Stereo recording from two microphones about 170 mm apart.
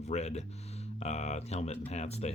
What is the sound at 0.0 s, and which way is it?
Speech, 40° left (ahead or behind).